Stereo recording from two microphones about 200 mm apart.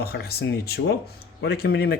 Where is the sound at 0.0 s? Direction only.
50° left (ahead or behind).